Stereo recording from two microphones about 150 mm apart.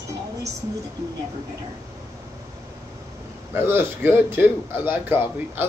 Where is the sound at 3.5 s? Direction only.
15° right (ahead or behind).